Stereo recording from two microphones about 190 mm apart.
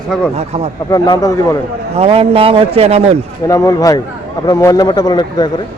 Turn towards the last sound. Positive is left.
turn(degrees=20)  # may be behind; listen again after turning